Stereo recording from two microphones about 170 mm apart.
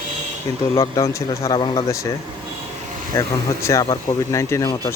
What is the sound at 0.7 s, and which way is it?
Speech, 20° left (ahead or behind).